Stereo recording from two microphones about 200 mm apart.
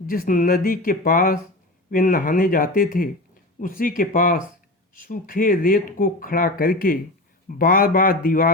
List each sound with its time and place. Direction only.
0.1 s speech: 45° left (ahead or behind)